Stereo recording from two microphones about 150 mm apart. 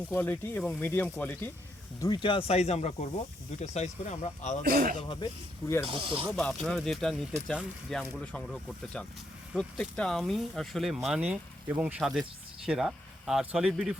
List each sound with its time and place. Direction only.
0.2 s speech: 15° left (ahead or behind)
2.0 s speech: 30° left (ahead or behind); by 4.5 s 55° left (ahead or behind)
4.6 s speech: 85° right
4.9 s speech: 35° left (ahead or behind)
5.9 s speech: 35° right (ahead or behind)
6.3 s speech: centre (ahead or behind)
9.6 s speech: 5° left (ahead or behind)